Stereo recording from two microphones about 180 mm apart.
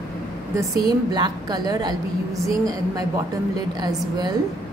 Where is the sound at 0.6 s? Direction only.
20° right (ahead or behind).